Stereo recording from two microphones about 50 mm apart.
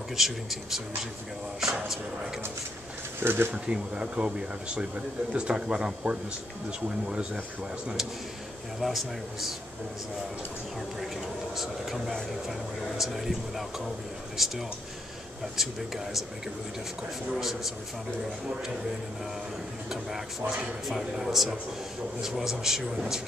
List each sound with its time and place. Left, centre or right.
0.1 s speech: centre
3.2 s speech: right
3.5 s speech: centre
8.8 s speech: centre
11.5 s speech: centre
17.3 s speech: centre
19.9 s speech: centre